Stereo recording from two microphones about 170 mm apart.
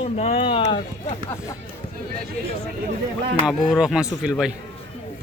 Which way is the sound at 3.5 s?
5° right (ahead or behind).